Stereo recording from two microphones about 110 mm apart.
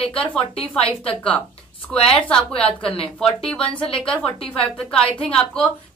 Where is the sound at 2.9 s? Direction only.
60° left (ahead or behind).